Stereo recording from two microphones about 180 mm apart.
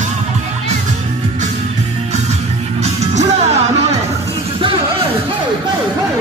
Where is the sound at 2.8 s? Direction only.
40° right (ahead or behind).